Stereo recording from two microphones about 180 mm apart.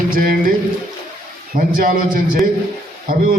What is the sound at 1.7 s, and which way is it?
Speech, 50° right (ahead or behind).